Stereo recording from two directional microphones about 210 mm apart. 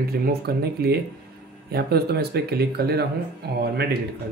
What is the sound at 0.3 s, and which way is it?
Speech, 50° right (ahead or behind).